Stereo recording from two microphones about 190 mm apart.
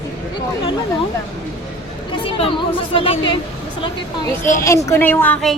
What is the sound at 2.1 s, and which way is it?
A woman's voice, 25° left (ahead or behind).